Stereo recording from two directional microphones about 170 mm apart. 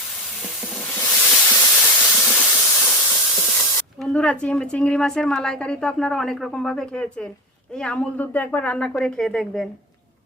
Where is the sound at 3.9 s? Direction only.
5° left (ahead or behind).